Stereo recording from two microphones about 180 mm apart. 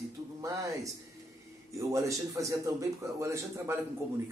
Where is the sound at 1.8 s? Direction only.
20° right (ahead or behind).